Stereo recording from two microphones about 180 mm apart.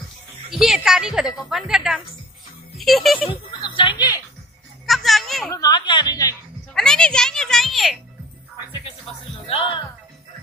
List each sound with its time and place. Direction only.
0.5 s a woman's voice: centre (ahead or behind)
3.3 s speech: 30° left (ahead or behind)
4.8 s a sound: centre (ahead or behind)
5.5 s speech: 20° left (ahead or behind)
6.7 s a child's voice: 5° left (ahead or behind)
9.0 s music: 30° left (ahead or behind)